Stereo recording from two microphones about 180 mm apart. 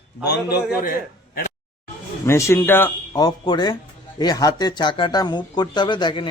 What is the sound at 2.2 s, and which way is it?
Speech, 15° left (ahead or behind).